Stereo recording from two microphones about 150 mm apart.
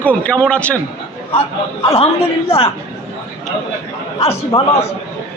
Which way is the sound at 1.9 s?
40° left (ahead or behind).